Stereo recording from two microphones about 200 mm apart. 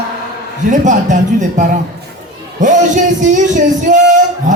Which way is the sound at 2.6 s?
40° right (ahead or behind).